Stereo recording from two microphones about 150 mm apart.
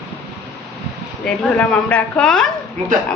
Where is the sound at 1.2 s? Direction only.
10° left (ahead or behind).